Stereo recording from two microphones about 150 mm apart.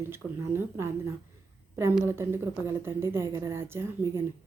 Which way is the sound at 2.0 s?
15° right (ahead or behind).